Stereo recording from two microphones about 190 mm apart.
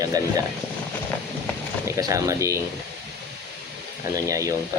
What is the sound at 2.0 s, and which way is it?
Speech, 15° right (ahead or behind).